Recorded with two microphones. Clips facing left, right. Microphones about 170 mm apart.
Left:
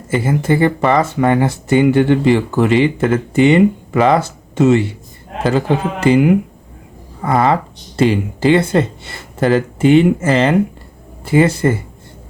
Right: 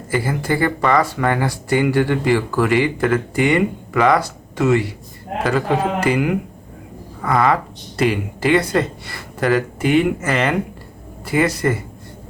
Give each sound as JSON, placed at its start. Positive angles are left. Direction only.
{"t": 0.1, "sound": "speech", "side_deg": 25}